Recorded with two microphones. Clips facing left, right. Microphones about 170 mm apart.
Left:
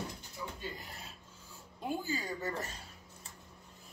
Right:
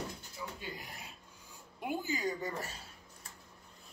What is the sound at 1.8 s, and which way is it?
Speech, 15° right (ahead or behind).